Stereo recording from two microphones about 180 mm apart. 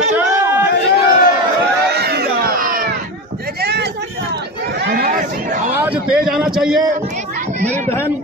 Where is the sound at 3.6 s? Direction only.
65° right (ahead or behind).